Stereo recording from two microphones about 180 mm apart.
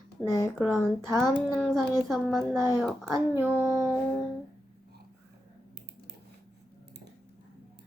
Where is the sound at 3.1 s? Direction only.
10° right (ahead or behind).